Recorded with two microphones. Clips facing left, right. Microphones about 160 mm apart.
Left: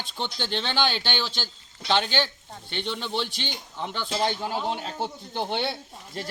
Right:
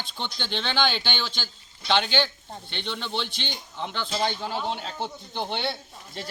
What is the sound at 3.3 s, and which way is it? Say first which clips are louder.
Speech: left 1 dB; 40° left (ahead or behind).